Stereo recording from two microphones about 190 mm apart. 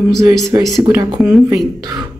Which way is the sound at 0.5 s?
15° right (ahead or behind).